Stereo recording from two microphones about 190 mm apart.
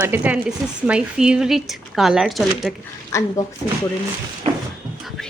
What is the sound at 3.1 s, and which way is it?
Speech, 15° left (ahead or behind).